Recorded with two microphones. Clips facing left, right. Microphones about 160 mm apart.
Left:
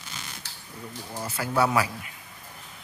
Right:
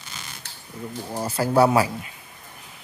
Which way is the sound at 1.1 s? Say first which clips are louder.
Right 7 dB; 35° right (ahead or behind).